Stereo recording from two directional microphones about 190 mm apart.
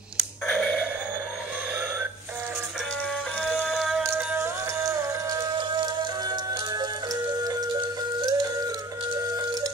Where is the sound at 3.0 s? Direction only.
5° left (ahead or behind).